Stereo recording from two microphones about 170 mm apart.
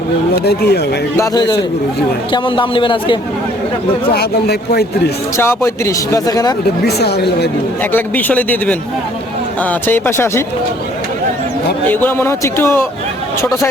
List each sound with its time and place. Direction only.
0.3 s speech: 70° left (ahead or behind)
1.1 s speech: 20° left (ahead or behind)
4.1 s speech: 70° left (ahead or behind)
5.4 s speech: 15° left (ahead or behind)
6.8 s speech: 75° left (ahead or behind)
7.9 s speech: 10° left (ahead or behind)
11.9 s speech: 10° left (ahead or behind)